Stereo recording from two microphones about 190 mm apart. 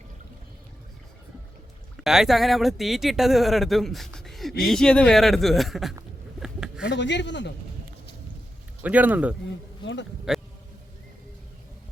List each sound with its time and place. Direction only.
2.0 s speech: centre (ahead or behind)
6.4 s a sound: 5° right (ahead or behind)
6.8 s speech: 70° left (ahead or behind)
8.8 s speech: 10° right (ahead or behind)
9.8 s speech: 70° left (ahead or behind)